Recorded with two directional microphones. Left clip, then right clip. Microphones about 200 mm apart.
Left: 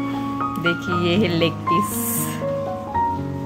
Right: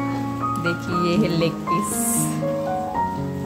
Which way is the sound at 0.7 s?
10° left (ahead or behind).